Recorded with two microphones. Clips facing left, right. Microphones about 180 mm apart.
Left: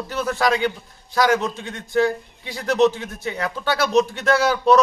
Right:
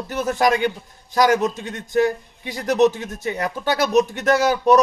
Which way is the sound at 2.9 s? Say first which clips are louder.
Right 1 dB; 45° right (ahead or behind).